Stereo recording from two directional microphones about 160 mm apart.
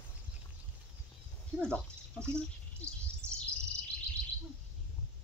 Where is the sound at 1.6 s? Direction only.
5° left (ahead or behind).